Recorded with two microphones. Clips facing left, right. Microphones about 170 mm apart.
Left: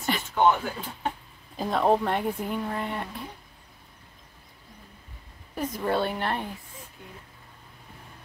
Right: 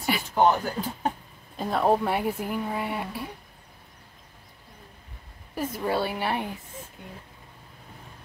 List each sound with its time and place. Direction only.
0.3 s speech: 40° right (ahead or behind)
1.6 s speech: centre (ahead or behind)
5.5 s speech: 5° right (ahead or behind)